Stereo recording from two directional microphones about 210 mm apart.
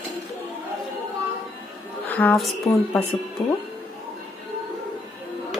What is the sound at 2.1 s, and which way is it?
Speech, 5° left (ahead or behind).